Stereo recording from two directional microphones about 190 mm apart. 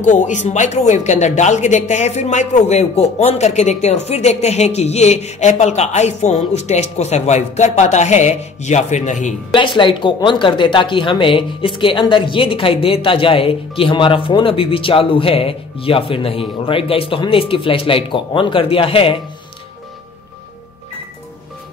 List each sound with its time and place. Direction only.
0.0 s speech: 40° left (ahead or behind)
9.6 s speech: 25° left (ahead or behind)